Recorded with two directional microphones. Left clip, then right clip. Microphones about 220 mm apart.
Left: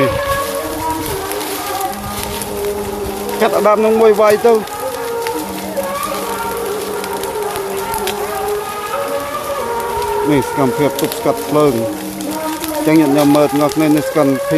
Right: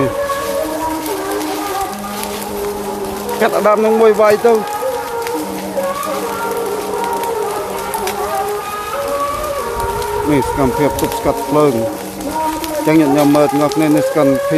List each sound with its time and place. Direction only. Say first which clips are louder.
3.3 s speech: even; centre (ahead or behind)
10.3 s speech: right 3 dB; centre (ahead or behind)
12.8 s speech: even; centre (ahead or behind)